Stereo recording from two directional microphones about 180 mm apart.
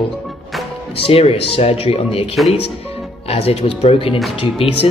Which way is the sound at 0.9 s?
30° left (ahead or behind).